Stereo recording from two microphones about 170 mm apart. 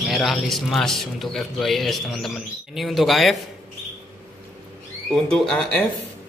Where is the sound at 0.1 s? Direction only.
Centre (ahead or behind).